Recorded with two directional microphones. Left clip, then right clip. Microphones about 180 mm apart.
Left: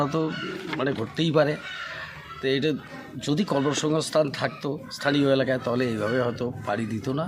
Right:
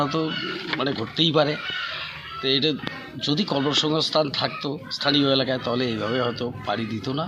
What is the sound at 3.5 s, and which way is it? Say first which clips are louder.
Speech: left 2 dB; 10° left (ahead or behind).